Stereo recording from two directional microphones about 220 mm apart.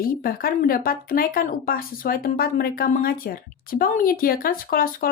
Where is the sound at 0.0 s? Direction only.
40° left (ahead or behind).